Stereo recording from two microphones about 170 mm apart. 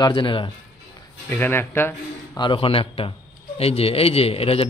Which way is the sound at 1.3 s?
10° left (ahead or behind).